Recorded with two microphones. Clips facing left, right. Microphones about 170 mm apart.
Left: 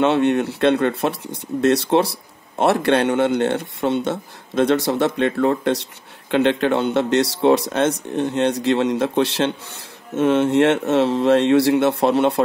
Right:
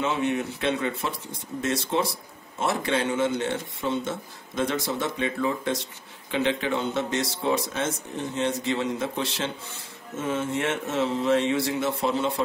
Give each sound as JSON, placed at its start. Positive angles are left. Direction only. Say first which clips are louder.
{"t": 0.0, "sound": "speech", "louder": "left 9 dB", "side_deg": 70}